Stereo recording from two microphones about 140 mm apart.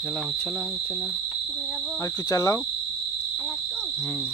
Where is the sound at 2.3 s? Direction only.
25° left (ahead or behind).